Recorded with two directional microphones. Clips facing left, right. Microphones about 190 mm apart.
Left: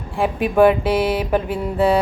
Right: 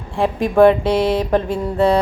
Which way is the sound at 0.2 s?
5° left (ahead or behind).